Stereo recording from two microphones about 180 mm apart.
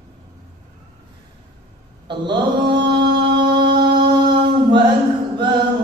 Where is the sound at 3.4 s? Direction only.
25° right (ahead or behind).